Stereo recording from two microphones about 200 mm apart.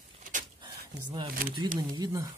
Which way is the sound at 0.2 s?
40° right (ahead or behind).